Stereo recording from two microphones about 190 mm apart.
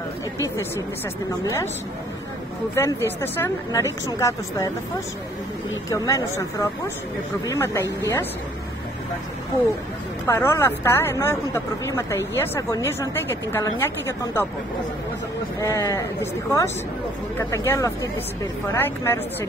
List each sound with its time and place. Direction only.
0.4 s a woman's voice: 15° left (ahead or behind)
2.7 s a woman's voice: 15° left (ahead or behind)
10.2 s a woman's voice: 10° left (ahead or behind)
15.6 s a woman's voice: 15° left (ahead or behind)